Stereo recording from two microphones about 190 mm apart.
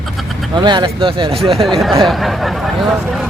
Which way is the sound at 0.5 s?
25° right (ahead or behind).